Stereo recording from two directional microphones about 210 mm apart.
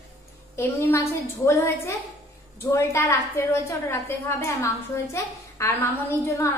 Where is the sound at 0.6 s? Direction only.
10° left (ahead or behind).